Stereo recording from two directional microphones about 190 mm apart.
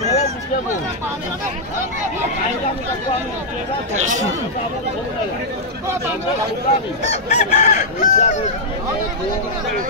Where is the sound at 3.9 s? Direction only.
40° right (ahead or behind).